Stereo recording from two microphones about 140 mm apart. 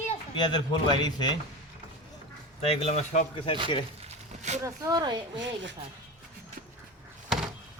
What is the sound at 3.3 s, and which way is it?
Speech, 35° left (ahead or behind).